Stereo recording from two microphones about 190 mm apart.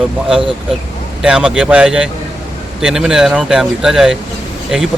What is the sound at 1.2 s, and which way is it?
Speech, 5° right (ahead or behind).